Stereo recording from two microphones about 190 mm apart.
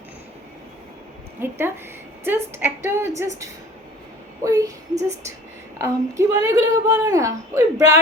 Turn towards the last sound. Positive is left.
turn(degrees=-15)  # may be behind; listen again after turning